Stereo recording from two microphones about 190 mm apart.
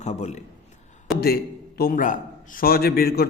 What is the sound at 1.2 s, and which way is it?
A man's voice, 55° left (ahead or behind).